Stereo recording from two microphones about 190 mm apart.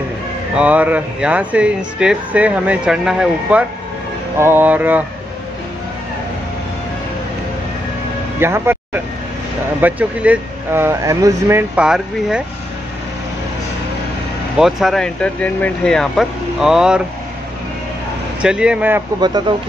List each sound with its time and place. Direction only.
0.6 s speech: 10° right (ahead or behind)
8.4 s speech: 15° right (ahead or behind)
14.6 s speech: centre (ahead or behind)
18.4 s speech: 5° right (ahead or behind)
19.1 s speech: 20° right (ahead or behind)